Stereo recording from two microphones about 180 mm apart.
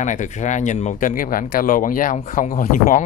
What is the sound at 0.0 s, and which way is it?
Speech, 45° left (ahead or behind).